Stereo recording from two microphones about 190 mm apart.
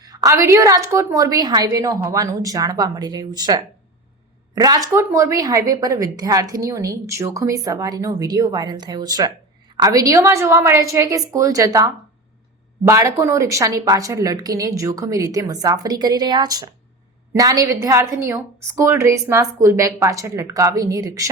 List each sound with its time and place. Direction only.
0.0 s a woman's voice: 20° right (ahead or behind)